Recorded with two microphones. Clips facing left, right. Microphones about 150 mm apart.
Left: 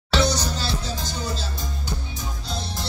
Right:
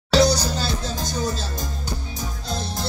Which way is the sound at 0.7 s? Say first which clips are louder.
Right 2 dB; 45° right (ahead or behind).